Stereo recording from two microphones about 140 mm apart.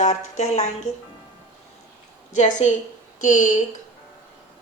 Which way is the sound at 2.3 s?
60° left (ahead or behind).